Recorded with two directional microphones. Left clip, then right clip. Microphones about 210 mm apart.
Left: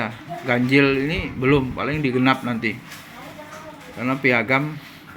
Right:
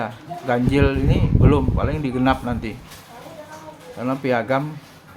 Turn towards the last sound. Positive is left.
turn(degrees=-10)  # may be behind; listen again after turning